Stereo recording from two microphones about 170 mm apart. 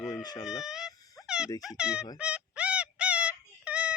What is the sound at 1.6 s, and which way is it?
Speech, 5° right (ahead or behind).